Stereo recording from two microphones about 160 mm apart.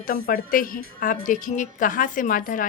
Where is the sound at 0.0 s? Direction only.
60° left (ahead or behind).